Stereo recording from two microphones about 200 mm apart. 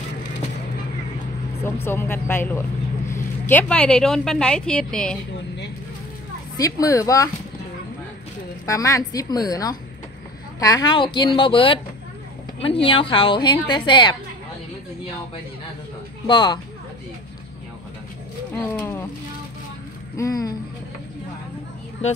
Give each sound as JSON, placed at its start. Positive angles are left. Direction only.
{"t": 1.9, "sound": "a woman's voice", "side_deg": 10}
{"t": 6.5, "sound": "a woman's voice", "side_deg": 15}
{"t": 8.6, "sound": "a woman's voice", "side_deg": 15}
{"t": 16.3, "sound": "a woman's voice", "side_deg": 20}
{"t": 18.7, "sound": "speech", "side_deg": 10}
{"t": 20.2, "sound": "speech", "side_deg": 15}